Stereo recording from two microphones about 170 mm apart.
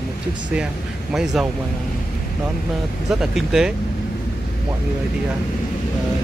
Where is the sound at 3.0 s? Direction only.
Centre (ahead or behind).